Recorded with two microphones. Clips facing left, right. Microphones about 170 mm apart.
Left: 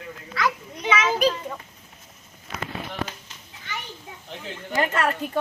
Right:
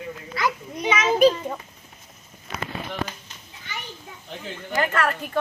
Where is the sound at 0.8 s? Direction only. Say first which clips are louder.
Even; 15° right (ahead or behind).